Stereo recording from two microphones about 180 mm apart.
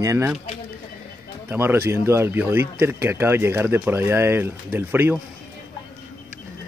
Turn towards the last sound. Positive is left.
turn(degrees=-10)  # may be behind; listen again after turning